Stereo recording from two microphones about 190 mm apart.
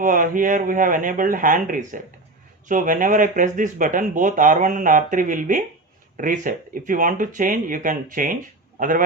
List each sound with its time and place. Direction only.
0.0 s speech: 45° right (ahead or behind)